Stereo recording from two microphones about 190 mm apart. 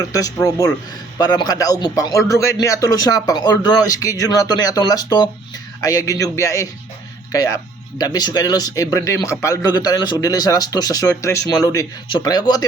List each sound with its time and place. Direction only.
0.0 s a man's voice: 20° left (ahead or behind)